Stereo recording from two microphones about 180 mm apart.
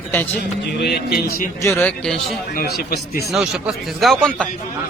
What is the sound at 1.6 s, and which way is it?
Speech, 15° left (ahead or behind).